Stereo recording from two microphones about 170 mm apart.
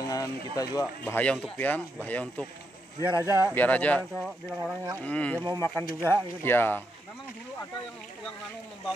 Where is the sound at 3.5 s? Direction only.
10° left (ahead or behind).